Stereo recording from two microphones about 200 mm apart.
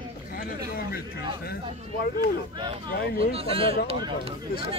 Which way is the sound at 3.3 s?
30° right (ahead or behind).